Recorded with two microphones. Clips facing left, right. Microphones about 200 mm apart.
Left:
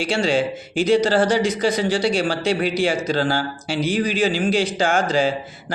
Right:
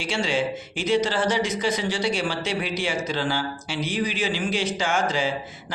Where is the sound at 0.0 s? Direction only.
35° left (ahead or behind).